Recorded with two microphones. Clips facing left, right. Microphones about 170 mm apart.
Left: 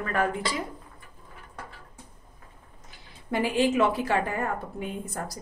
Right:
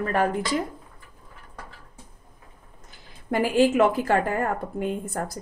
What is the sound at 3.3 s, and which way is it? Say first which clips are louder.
A woman's voice: right 4 dB; 45° right (ahead or behind).